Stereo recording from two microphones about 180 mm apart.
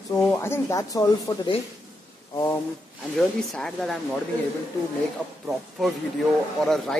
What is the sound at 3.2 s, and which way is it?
Speech, 5° left (ahead or behind).